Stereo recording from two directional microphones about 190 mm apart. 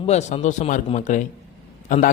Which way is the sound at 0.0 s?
35° left (ahead or behind).